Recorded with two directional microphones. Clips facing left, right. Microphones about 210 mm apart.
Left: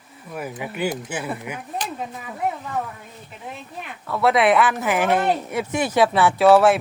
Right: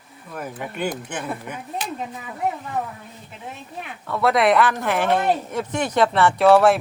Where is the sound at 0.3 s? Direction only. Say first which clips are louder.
Left 1 dB; 5° left (ahead or behind).